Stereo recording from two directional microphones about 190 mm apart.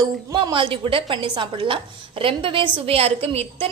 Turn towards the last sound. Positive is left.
turn(degrees=-30)  # may be behind; listen again after turning